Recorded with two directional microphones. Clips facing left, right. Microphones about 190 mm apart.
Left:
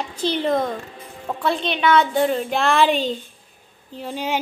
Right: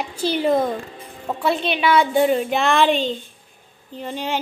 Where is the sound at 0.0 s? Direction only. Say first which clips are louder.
Right 2 dB; 10° right (ahead or behind).